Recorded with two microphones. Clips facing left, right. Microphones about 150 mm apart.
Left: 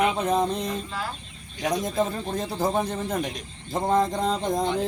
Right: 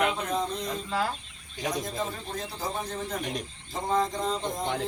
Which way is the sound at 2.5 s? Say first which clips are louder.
Left 10 dB; 55° left (ahead or behind).